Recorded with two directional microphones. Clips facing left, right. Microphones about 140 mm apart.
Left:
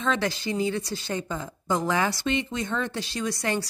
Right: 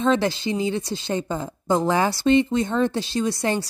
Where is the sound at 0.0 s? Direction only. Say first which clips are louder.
Right 6 dB; 30° right (ahead or behind).